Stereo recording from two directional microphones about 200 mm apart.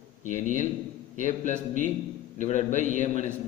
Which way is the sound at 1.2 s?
35° left (ahead or behind).